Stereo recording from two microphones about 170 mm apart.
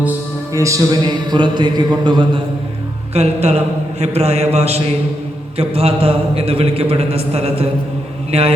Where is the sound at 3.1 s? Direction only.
40° right (ahead or behind).